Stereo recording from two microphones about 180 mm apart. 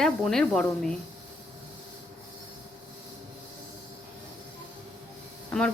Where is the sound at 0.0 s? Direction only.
5° left (ahead or behind).